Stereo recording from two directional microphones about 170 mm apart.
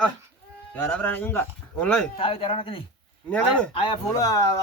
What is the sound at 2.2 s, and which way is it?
Speech, 30° left (ahead or behind).